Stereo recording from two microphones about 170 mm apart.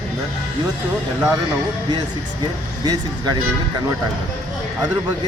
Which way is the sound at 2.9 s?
25° right (ahead or behind).